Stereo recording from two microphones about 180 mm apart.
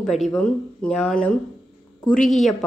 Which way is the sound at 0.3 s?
5° left (ahead or behind).